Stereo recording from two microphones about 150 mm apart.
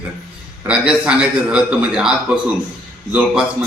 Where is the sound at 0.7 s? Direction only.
5° right (ahead or behind).